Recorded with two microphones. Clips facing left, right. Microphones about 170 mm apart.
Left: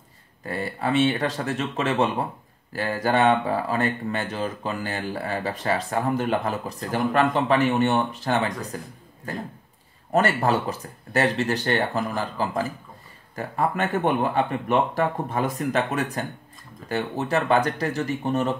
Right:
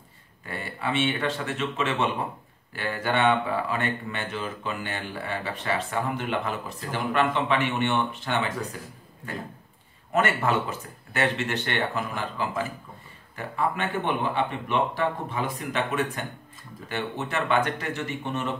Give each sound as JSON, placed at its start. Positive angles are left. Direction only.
{"t": 0.5, "sound": "a man's voice", "side_deg": 40}